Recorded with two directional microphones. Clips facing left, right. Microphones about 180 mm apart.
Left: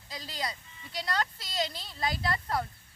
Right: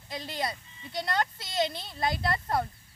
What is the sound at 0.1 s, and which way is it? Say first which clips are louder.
A woman's voice: right 4 dB; 25° right (ahead or behind).